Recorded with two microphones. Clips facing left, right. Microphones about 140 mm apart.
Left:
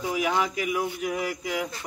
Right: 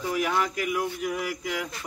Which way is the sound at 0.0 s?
5° left (ahead or behind).